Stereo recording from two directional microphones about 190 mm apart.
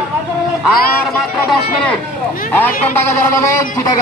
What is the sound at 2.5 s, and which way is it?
A man's voice, 10° left (ahead or behind).